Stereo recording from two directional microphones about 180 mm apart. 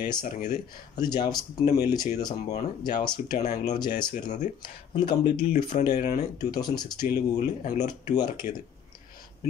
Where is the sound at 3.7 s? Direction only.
25° left (ahead or behind).